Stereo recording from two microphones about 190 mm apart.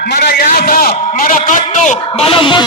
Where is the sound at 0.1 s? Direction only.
55° left (ahead or behind).